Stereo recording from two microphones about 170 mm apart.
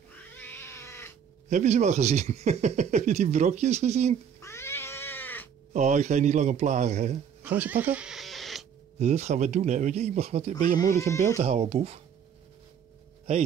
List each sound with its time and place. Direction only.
0.1 s cat: 10° left (ahead or behind)
1.5 s speech: 40° right (ahead or behind)
4.4 s cat: 15° left (ahead or behind)
5.7 s a man's voice: 45° right (ahead or behind)
7.4 s a sound: 10° right (ahead or behind)
9.0 s speech: 40° right (ahead or behind)
10.8 s speech: 15° left (ahead or behind)
11.3 s speech: 40° right (ahead or behind)